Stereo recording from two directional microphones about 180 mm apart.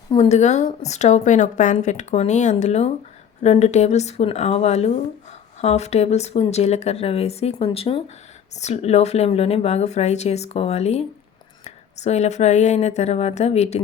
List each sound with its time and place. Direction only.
0.1 s a woman's voice: 35° left (ahead or behind)